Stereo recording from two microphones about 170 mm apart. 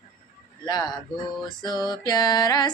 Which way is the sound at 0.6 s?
25° left (ahead or behind).